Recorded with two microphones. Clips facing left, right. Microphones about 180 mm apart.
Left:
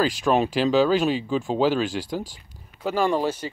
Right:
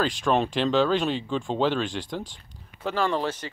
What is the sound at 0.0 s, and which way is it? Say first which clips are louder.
Speech: left 3 dB; 5° left (ahead or behind).